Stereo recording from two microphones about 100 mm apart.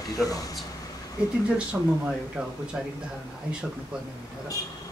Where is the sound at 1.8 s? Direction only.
10° right (ahead or behind).